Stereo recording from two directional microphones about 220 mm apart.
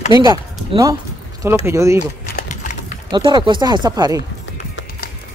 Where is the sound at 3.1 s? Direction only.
20° right (ahead or behind).